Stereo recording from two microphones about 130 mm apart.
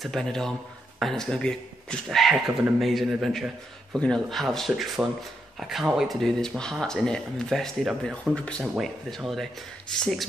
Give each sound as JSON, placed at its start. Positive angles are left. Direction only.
{"t": 0.0, "sound": "speech", "side_deg": 5}